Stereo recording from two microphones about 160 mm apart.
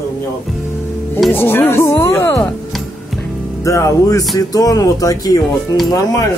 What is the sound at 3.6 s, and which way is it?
Speech, 20° left (ahead or behind).